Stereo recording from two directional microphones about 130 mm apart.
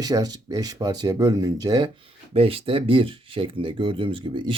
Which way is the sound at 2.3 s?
45° right (ahead or behind).